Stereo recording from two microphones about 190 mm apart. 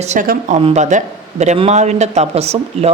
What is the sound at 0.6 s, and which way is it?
A man's voice, 35° right (ahead or behind).